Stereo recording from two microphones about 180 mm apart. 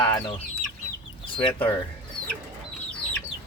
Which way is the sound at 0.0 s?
20° left (ahead or behind).